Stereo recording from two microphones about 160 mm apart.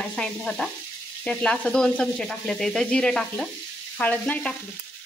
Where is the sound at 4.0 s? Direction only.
10° left (ahead or behind).